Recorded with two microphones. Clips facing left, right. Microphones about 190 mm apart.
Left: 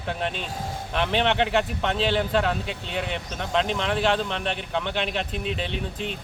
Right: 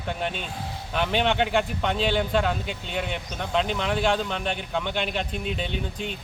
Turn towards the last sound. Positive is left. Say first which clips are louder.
# left 1 dB
turn(degrees=0)  # may be behind; listen again after turning